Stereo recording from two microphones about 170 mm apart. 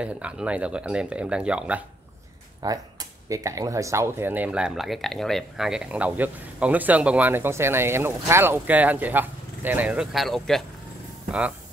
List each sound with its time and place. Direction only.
0.0 s speech: 5° right (ahead or behind)
2.6 s speech: 20° right (ahead or behind); by 10.6 s centre (ahead or behind)